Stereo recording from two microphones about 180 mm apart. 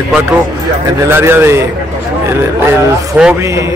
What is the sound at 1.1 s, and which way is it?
Speech, 10° right (ahead or behind).